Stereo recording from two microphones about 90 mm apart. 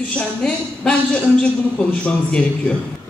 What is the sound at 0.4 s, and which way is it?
A man's voice, 10° left (ahead or behind).